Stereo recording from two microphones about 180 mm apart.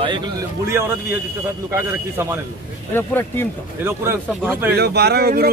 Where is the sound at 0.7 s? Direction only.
10° right (ahead or behind).